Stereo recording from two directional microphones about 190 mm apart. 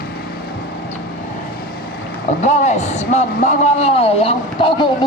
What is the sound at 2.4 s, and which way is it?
A man's voice, 40° left (ahead or behind).